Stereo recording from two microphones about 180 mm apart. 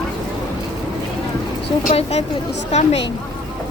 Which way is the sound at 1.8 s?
35° left (ahead or behind).